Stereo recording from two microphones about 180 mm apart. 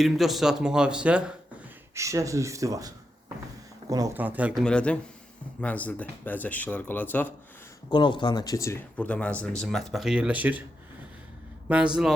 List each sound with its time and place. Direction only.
0.0 s speech: centre (ahead or behind)
2.0 s speech: 15° right (ahead or behind)
4.2 s speech: 10° right (ahead or behind)
4.6 s speech: 5° left (ahead or behind)
7.9 s speech: 25° left (ahead or behind); by 10.6 s 10° right (ahead or behind)
11.7 s speech: 5° right (ahead or behind)